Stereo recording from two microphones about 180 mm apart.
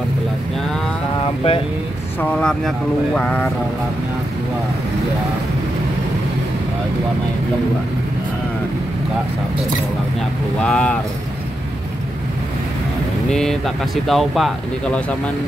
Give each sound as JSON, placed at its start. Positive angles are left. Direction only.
{"t": 1.2, "sound": "vehicle", "side_deg": 30}
{"t": 2.1, "sound": "speech", "side_deg": 5}
{"t": 10.6, "sound": "speech", "side_deg": 5}
{"t": 13.3, "sound": "speech", "side_deg": 5}